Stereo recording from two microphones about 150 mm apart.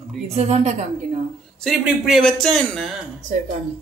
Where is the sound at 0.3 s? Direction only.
45° right (ahead or behind).